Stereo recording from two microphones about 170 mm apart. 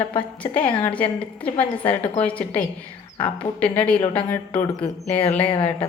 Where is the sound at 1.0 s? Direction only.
10° left (ahead or behind).